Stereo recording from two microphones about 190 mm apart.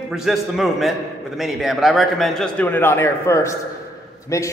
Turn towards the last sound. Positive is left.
turn(degrees=15)  # may be behind; listen again after turning